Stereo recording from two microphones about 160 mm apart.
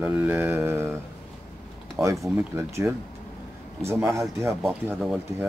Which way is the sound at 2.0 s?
Centre (ahead or behind).